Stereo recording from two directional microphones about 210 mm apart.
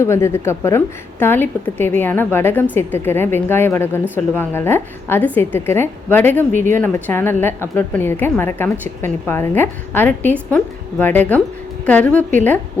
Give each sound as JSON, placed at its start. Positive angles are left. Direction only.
{"t": 0.0, "sound": "a woman's voice", "side_deg": 15}
{"t": 6.5, "sound": "speech", "side_deg": -35}
{"t": 6.7, "sound": "a woman's voice", "side_deg": 10}